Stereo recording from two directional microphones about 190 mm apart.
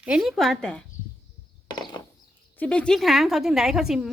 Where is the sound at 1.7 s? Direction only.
20° left (ahead or behind).